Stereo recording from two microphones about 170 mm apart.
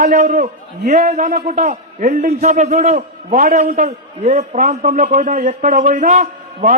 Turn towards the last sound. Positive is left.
turn(degrees=-50)  # may be behind; listen again after turning